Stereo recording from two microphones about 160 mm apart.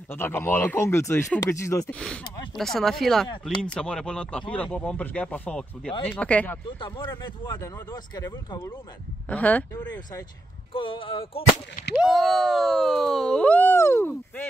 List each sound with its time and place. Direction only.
0.1 s speech: 15° left (ahead or behind)
2.5 s a sound: centre (ahead or behind)
3.6 s speech: 5° left (ahead or behind); by 8.7 s 25° left (ahead or behind)
9.3 s speech: 10° left (ahead or behind)
10.7 s speech: 35° left (ahead or behind)
12.0 s a sound: centre (ahead or behind)